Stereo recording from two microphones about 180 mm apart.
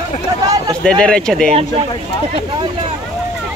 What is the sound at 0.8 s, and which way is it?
Speech, 5° left (ahead or behind).